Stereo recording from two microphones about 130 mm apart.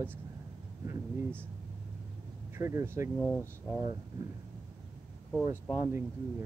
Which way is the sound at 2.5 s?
20° right (ahead or behind).